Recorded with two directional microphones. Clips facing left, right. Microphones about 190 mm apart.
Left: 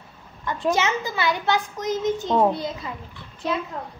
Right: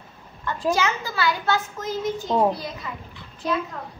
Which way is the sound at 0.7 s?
20° left (ahead or behind).